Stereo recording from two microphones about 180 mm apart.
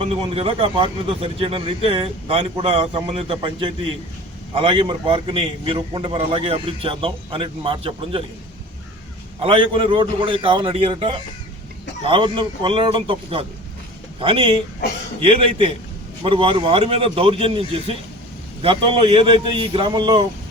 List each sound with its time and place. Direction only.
0.0 s a man's voice: 30° right (ahead or behind)
9.4 s a man's voice: 30° right (ahead or behind)